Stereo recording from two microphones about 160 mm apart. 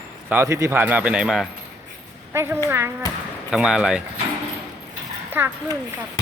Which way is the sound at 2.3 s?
15° right (ahead or behind).